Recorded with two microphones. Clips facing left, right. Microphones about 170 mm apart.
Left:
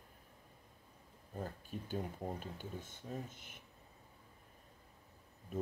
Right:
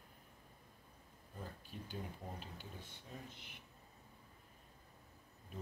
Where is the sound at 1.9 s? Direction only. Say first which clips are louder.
Left 7 dB; 50° left (ahead or behind).